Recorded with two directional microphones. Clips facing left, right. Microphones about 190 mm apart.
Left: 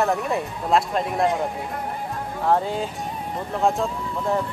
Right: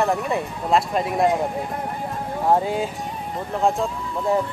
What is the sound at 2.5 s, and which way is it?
Speech, 10° right (ahead or behind).